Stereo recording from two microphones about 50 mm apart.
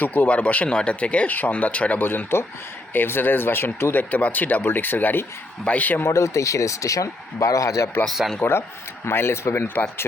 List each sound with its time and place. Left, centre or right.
0.0 s speech: left
2.0 s speech: left
3.9 s speech: left
6.0 s speech: left
8.4 s speech: left
9.0 s speech: left